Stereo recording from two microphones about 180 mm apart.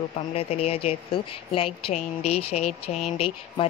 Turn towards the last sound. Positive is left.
turn(degrees=30)  # may be behind; listen again after turning